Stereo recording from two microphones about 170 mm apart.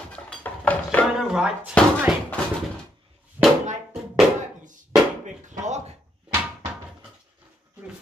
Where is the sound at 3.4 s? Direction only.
35° right (ahead or behind).